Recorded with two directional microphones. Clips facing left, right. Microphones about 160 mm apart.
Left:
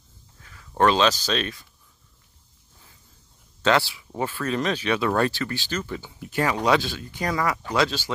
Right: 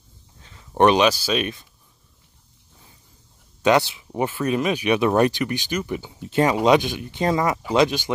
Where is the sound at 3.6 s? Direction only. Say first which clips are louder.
Right 3 dB; 15° right (ahead or behind).